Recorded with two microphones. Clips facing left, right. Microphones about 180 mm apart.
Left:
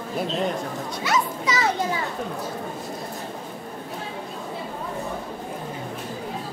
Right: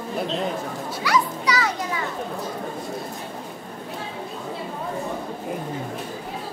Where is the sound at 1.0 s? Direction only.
25° left (ahead or behind).